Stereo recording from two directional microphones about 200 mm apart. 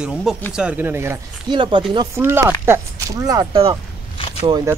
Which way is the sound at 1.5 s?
25° right (ahead or behind).